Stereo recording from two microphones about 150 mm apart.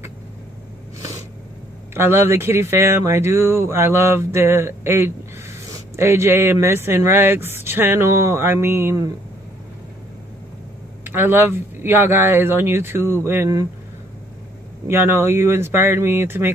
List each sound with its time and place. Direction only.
2.0 s speech: 15° right (ahead or behind)
11.1 s speech: 15° right (ahead or behind)
14.9 s speech: 15° right (ahead or behind)